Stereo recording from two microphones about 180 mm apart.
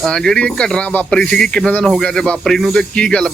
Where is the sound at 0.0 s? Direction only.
5° left (ahead or behind).